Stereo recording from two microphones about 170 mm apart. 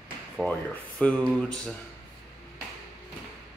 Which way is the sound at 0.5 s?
5° left (ahead or behind).